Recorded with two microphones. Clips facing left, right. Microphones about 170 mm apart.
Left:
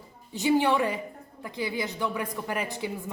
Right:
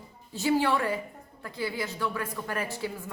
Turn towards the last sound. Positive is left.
turn(degrees=20)  # may be behind; listen again after turning